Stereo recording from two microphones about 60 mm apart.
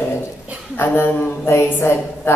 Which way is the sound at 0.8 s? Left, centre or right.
Left.